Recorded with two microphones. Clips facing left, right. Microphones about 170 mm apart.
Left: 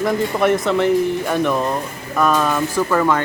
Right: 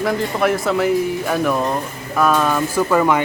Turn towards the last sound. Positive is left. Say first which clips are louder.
# right 1 dB
turn(degrees=-15)  # may be behind; listen again after turning